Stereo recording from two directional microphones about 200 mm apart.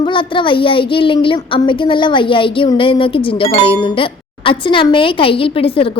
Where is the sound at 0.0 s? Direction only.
25° left (ahead or behind).